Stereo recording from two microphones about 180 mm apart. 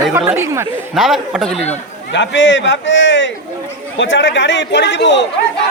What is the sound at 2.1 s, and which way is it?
A man's voice, 90° left.